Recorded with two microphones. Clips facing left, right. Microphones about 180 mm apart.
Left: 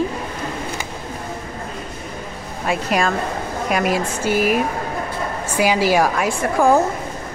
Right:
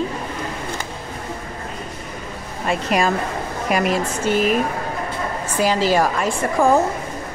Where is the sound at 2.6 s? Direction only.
Centre (ahead or behind).